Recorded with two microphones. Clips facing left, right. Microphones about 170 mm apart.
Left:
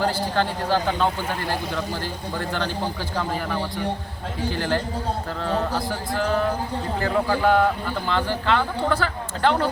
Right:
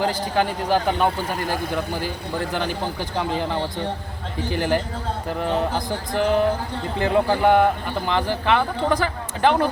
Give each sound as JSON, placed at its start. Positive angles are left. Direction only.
{"t": 0.0, "sound": "speech", "side_deg": -15}